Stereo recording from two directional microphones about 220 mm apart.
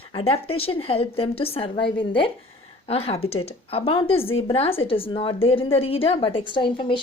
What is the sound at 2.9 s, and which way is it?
A woman's voice, 25° left (ahead or behind).